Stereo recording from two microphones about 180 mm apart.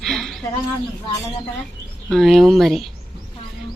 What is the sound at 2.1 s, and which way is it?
Speech, centre (ahead or behind).